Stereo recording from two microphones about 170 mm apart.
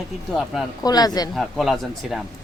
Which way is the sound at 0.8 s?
25° left (ahead or behind).